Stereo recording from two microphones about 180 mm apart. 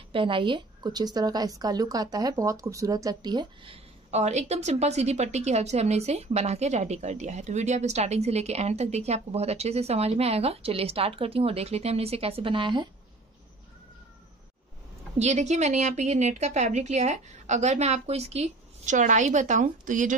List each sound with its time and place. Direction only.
0.1 s a woman's voice: 30° right (ahead or behind)
15.1 s a woman's voice: 40° right (ahead or behind)